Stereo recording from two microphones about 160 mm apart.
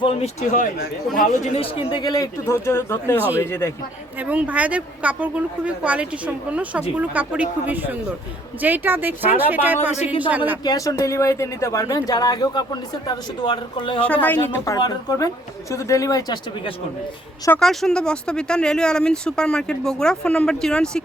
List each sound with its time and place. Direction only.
0.0 s speech: 35° left (ahead or behind)
0.5 s speech: 60° left (ahead or behind)
1.5 s a woman's voice: 35° left (ahead or behind); by 3.7 s 15° left (ahead or behind)
4.2 s a woman's voice: 10° right (ahead or behind)
8.6 s a woman's voice: 10° right (ahead or behind)
10.6 s speech: 25° left (ahead or behind)
14.0 s a woman's voice: 10° left (ahead or behind)
17.6 s speech: centre (ahead or behind)